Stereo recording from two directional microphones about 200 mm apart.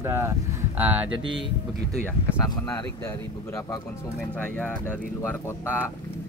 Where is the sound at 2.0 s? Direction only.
10° left (ahead or behind).